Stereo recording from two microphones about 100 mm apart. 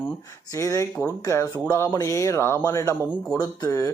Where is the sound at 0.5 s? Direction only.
30° left (ahead or behind).